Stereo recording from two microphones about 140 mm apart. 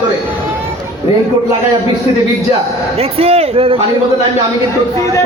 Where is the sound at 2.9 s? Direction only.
45° right (ahead or behind).